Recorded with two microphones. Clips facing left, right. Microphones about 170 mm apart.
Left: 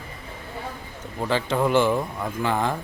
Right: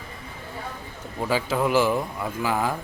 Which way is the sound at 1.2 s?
5° right (ahead or behind).